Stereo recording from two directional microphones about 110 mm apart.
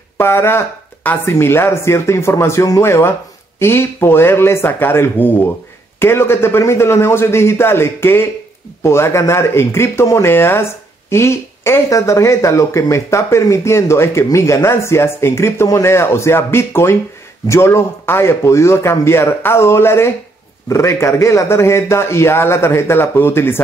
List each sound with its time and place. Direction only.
0.2 s speech: 20° left (ahead or behind)